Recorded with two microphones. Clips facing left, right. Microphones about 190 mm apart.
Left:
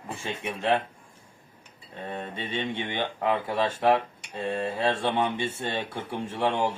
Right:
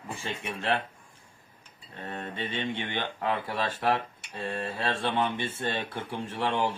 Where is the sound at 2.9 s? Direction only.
15° left (ahead or behind).